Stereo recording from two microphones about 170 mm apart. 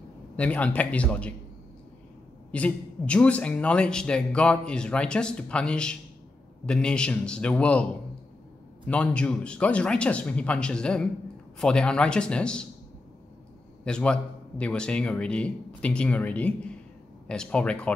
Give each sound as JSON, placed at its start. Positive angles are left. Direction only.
{"t": 0.4, "sound": "a man's voice", "side_deg": 10}
{"t": 2.5, "sound": "a man's voice", "side_deg": 5}
{"t": 13.8, "sound": "a man's voice", "side_deg": 5}